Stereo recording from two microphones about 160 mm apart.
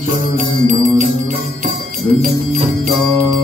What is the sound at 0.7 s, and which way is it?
Music, 50° right (ahead or behind).